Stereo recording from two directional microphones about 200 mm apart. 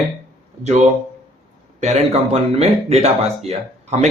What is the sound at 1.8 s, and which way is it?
Speech, 35° right (ahead or behind).